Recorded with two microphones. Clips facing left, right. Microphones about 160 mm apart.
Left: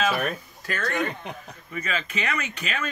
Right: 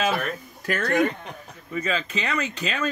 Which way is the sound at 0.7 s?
45° right (ahead or behind).